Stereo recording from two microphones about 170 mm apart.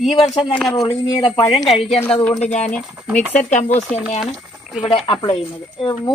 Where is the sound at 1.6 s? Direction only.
Centre (ahead or behind).